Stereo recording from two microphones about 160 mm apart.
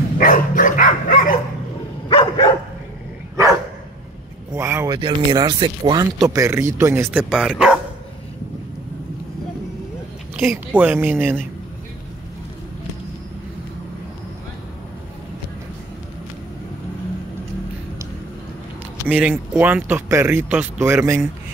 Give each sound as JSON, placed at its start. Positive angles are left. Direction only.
{"t": 0.2, "sound": "dog", "side_deg": 60}
{"t": 2.0, "sound": "dog", "side_deg": 25}
{"t": 4.6, "sound": "speech", "side_deg": -15}
{"t": 4.9, "sound": "speech", "side_deg": -30}
{"t": 10.4, "sound": "speech", "side_deg": -5}
{"t": 19.0, "sound": "speech", "side_deg": -10}